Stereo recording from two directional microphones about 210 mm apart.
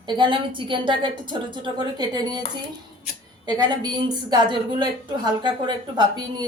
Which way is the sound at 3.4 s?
20° right (ahead or behind).